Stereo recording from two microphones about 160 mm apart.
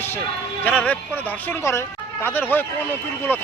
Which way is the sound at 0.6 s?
10° left (ahead or behind).